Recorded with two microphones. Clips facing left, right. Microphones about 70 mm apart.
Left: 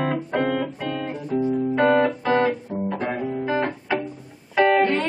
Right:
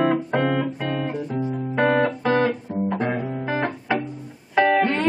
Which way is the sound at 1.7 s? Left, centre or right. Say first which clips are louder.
Even; centre.